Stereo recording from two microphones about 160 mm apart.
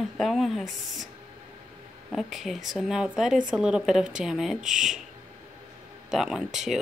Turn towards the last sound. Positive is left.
turn(degrees=-5)  # may be behind; listen again after turning